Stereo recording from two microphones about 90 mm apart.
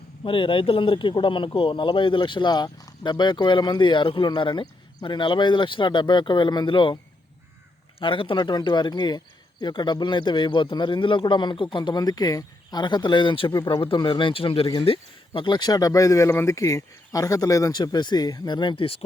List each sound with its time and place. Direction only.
0.3 s speech: 75° left (ahead or behind)
7.9 s speech: 75° left (ahead or behind); by 12.8 s 45° left (ahead or behind)
12.8 s speech: 60° left (ahead or behind); by 14.7 s 90° left
14.8 s speech: 70° left (ahead or behind); by 17.7 s 40° left (ahead or behind)
17.7 s speech: 55° left (ahead or behind)